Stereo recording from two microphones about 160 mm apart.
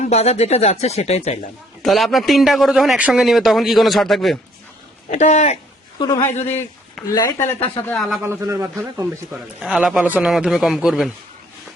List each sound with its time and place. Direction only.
0.0 s speech: 40° left (ahead or behind)
1.8 s a man's voice: centre (ahead or behind)
5.1 s speech: 45° left (ahead or behind)
6.0 s speech: 25° left (ahead or behind)
6.5 s a sound: 10° left (ahead or behind)
7.1 s speech: 25° left (ahead or behind)
8.2 s a man's voice: 15° right (ahead or behind)